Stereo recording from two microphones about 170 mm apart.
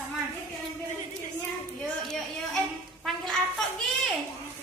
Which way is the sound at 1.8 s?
5° left (ahead or behind).